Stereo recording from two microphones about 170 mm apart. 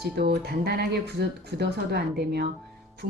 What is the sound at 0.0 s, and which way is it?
Speech, 70° right (ahead or behind).